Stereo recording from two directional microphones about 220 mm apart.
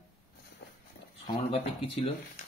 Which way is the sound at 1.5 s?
25° left (ahead or behind).